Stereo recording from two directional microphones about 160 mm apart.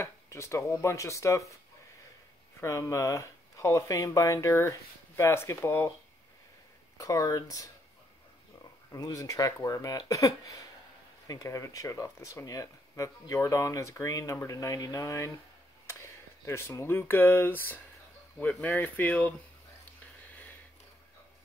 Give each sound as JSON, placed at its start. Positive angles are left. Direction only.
{"t": 0.0, "sound": "speech", "side_deg": 15}
{"t": 2.6, "sound": "speech", "side_deg": 20}
{"t": 7.0, "sound": "speech", "side_deg": 20}
{"t": 8.9, "sound": "speech", "side_deg": 20}